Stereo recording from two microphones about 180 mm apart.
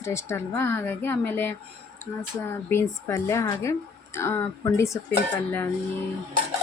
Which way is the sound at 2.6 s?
15° left (ahead or behind).